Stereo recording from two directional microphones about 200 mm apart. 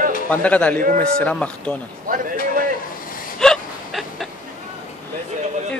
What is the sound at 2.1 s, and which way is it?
Speech, 45° right (ahead or behind).